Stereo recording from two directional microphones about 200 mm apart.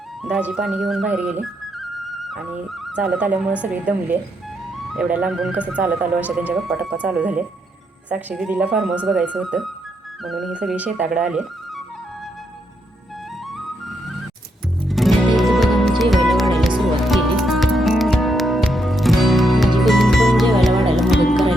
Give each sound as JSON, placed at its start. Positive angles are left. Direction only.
{"t": 0.2, "sound": "speech", "side_deg": -5}
{"t": 1.4, "sound": "music", "side_deg": 0}
{"t": 3.6, "sound": "speech", "side_deg": -5}
{"t": 14.8, "sound": "music", "side_deg": 0}